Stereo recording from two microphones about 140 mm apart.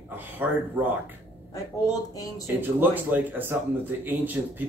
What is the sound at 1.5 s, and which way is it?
Speech, 25° left (ahead or behind).